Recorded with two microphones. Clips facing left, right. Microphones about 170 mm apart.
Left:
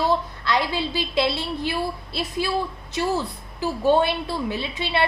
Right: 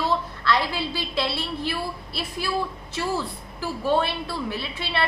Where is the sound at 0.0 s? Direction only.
15° left (ahead or behind).